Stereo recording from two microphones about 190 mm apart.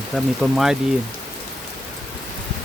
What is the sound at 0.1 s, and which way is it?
Speech, centre (ahead or behind).